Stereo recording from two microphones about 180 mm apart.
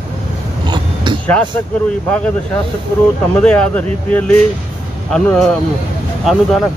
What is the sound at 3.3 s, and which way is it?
Speech, 5° left (ahead or behind).